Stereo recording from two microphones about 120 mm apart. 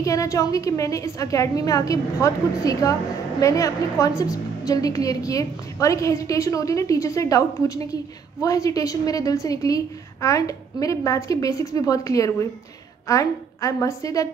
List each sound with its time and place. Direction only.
0.0 s a woman's voice: 25° left (ahead or behind)